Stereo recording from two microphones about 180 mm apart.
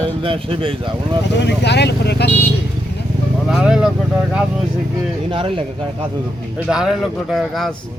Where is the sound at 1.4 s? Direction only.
70° left (ahead or behind).